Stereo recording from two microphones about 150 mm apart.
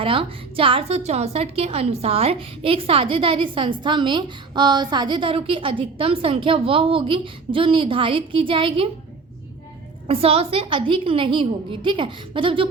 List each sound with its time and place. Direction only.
0.0 s a woman's voice: 35° right (ahead or behind)
10.1 s a woman's voice: 40° right (ahead or behind)